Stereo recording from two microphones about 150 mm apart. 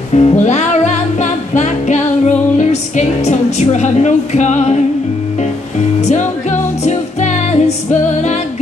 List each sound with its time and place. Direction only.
0.1 s music: 45° left (ahead or behind)
5.9 s music: 50° left (ahead or behind)